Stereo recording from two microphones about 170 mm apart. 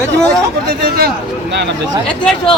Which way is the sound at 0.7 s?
65° right (ahead or behind).